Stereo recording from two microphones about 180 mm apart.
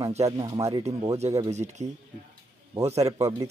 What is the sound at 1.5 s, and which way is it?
Speech, 40° right (ahead or behind).